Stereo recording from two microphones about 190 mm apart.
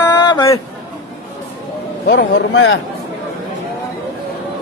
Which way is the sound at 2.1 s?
75° left (ahead or behind).